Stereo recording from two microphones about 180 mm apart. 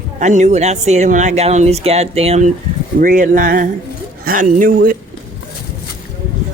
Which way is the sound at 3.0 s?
50° right (ahead or behind).